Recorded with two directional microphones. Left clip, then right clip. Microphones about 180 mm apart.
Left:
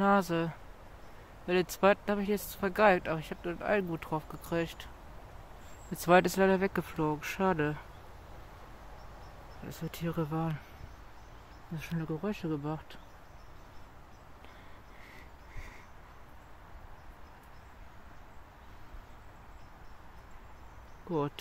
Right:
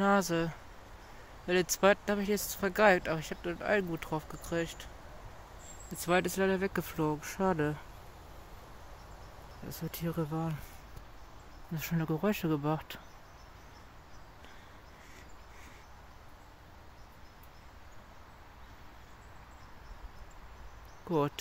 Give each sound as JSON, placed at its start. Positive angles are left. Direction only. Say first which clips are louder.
{"t": 0.0, "sound": "speech", "louder": "left 1 dB", "side_deg": 5}
{"t": 5.9, "sound": "speech", "louder": "left 5 dB", "side_deg": 20}
{"t": 6.8, "sound": "speech", "louder": "left 1 dB", "side_deg": 0}
{"t": 9.7, "sound": "speech", "louder": "even", "side_deg": 0}
{"t": 11.7, "sound": "speech", "louder": "right 3 dB", "side_deg": -15}